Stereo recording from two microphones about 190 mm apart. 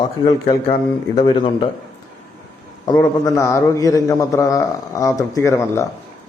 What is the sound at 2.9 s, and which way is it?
A man's voice, 20° left (ahead or behind).